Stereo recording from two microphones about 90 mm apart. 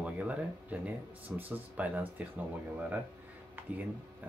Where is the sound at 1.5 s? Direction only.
15° right (ahead or behind).